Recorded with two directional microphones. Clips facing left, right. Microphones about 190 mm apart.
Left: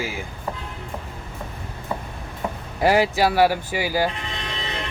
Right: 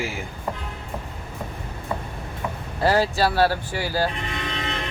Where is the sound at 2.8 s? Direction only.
15° left (ahead or behind).